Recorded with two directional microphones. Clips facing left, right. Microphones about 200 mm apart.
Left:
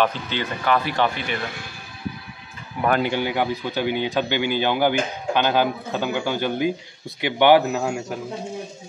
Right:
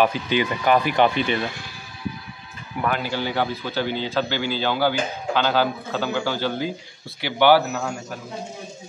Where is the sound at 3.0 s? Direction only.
15° left (ahead or behind).